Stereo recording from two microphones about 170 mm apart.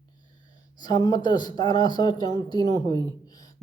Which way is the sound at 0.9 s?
25° left (ahead or behind).